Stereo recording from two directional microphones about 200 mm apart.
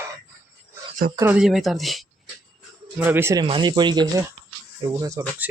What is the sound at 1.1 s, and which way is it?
Speech, 10° right (ahead or behind).